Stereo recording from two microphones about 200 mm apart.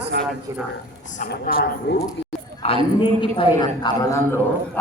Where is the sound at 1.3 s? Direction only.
55° left (ahead or behind).